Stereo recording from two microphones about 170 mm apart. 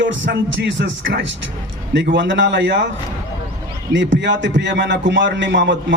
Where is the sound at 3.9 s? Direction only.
90° right.